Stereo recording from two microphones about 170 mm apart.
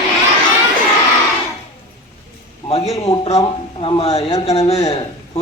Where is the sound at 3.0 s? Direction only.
35° left (ahead or behind).